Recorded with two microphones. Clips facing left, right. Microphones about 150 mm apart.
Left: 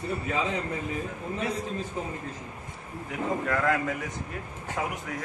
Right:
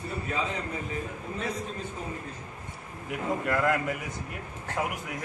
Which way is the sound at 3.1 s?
5° right (ahead or behind).